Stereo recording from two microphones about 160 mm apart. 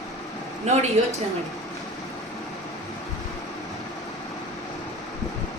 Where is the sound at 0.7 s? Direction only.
45° right (ahead or behind).